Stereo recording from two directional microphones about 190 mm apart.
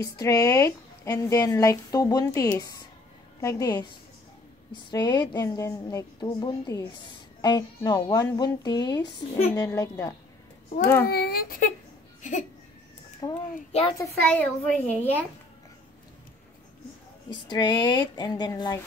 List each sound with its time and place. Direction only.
0.0 s a woman's voice: 20° left (ahead or behind)
4.9 s speech: 25° left (ahead or behind)
11.1 s speech: 55° left (ahead or behind)
12.2 s a sound: 40° left (ahead or behind)
13.2 s a woman's voice: 20° left (ahead or behind)
17.3 s speech: 20° left (ahead or behind)